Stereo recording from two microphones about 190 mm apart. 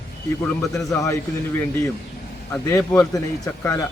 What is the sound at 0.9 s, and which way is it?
Speech, 15° left (ahead or behind).